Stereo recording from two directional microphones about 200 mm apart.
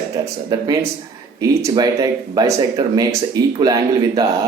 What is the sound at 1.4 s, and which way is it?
Speech, 20° right (ahead or behind).